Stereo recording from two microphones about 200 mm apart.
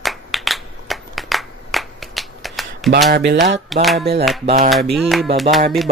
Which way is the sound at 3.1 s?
60° right (ahead or behind).